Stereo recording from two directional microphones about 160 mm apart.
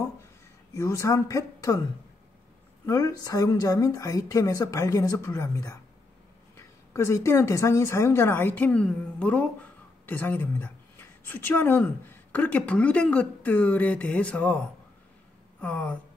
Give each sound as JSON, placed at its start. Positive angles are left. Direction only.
{"t": 0.7, "sound": "speech", "side_deg": 20}
{"t": 2.9, "sound": "speech", "side_deg": 25}
{"t": 15.6, "sound": "a sound", "side_deg": 10}